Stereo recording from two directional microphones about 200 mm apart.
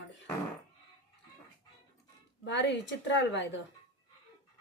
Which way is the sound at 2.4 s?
60° left (ahead or behind).